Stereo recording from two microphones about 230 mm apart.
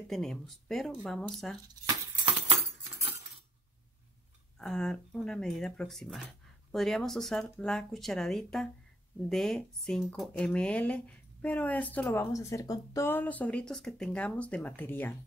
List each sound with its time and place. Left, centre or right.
0.1 s speech: centre
4.6 s speech: centre